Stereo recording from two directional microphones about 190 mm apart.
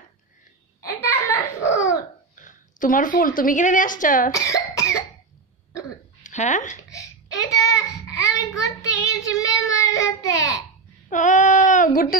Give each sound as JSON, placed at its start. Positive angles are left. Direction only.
{"t": 0.8, "sound": "a sound", "side_deg": 15}
{"t": 2.3, "sound": "a woman's voice", "side_deg": 45}
{"t": 4.3, "sound": "cough", "side_deg": 15}
{"t": 6.2, "sound": "speech", "side_deg": 40}
{"t": 6.9, "sound": "a sound", "side_deg": 15}
{"t": 8.1, "sound": "child singing", "side_deg": 15}
{"t": 11.1, "sound": "child singing", "side_deg": 40}